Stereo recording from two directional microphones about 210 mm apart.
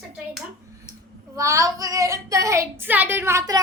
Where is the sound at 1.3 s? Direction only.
15° right (ahead or behind).